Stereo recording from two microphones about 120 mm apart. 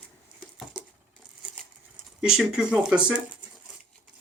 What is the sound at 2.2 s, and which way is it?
Speech, 5° right (ahead or behind).